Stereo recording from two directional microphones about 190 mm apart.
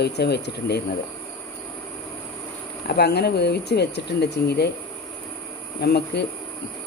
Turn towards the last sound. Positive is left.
turn(degrees=60)  # may be behind; listen again after turning